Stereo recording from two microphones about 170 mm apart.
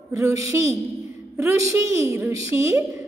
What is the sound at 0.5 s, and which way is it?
A woman's voice, 15° right (ahead or behind).